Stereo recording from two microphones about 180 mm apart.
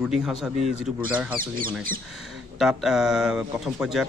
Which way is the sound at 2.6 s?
Centre (ahead or behind).